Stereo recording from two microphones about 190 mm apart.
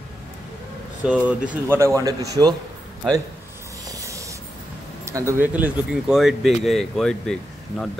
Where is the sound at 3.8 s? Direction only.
15° right (ahead or behind).